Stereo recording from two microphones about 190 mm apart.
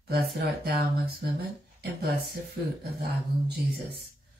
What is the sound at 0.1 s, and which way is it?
Speech, 55° right (ahead or behind).